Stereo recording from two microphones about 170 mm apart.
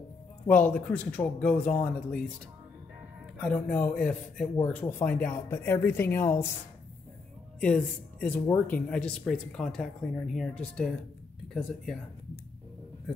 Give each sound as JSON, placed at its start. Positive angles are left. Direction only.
{"t": 0.5, "sound": "speech", "side_deg": 10}
{"t": 3.3, "sound": "speech", "side_deg": 10}
{"t": 7.6, "sound": "speech", "side_deg": 5}